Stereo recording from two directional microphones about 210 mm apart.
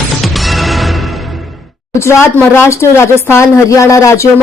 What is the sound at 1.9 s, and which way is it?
A woman's voice, 15° left (ahead or behind).